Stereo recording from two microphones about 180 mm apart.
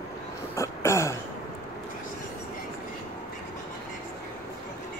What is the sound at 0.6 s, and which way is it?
Throat clearing, 15° left (ahead or behind).